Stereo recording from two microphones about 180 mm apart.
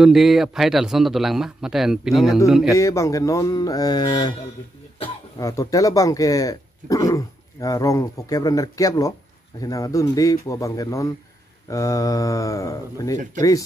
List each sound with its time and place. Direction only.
0.0 s a man's voice: centre (ahead or behind)
2.7 s speech: 15° left (ahead or behind)
5.4 s speech: 20° left (ahead or behind)